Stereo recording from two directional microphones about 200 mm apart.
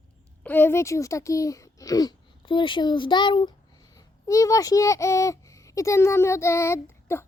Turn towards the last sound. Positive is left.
turn(degrees=10)  # may be behind; listen again after turning